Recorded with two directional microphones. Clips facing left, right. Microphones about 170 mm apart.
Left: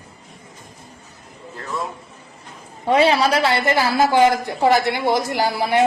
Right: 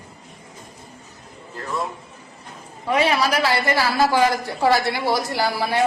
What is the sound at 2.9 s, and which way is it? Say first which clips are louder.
A woman's voice: left 4 dB; 30° left (ahead or behind).